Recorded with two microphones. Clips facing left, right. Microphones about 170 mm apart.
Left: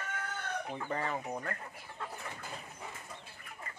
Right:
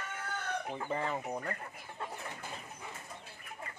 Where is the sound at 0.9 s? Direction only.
5° right (ahead or behind).